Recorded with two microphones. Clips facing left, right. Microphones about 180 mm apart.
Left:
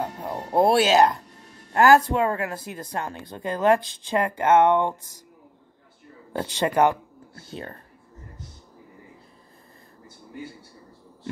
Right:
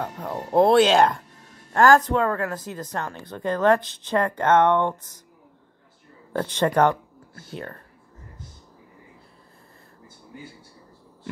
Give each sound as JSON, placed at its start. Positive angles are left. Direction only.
{"t": 0.3, "sound": "speech", "side_deg": 10}
{"t": 6.3, "sound": "speech", "side_deg": 10}
{"t": 7.3, "sound": "speech", "side_deg": 25}